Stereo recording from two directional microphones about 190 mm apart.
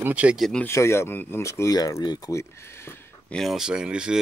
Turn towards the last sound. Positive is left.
turn(degrees=-5)  # may be behind; listen again after turning